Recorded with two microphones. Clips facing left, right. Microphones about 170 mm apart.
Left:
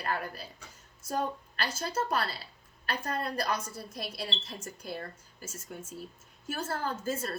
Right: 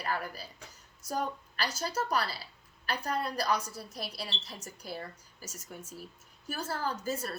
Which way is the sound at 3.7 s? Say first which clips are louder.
Left 1 dB; 25° left (ahead or behind).